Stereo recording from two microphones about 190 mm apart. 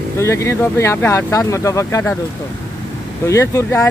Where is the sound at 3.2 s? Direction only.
15° left (ahead or behind).